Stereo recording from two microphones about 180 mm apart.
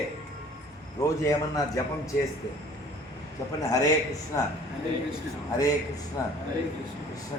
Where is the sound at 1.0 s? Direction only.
15° left (ahead or behind).